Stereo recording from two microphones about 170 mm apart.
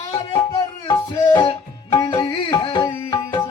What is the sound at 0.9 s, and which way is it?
Music, 25° left (ahead or behind).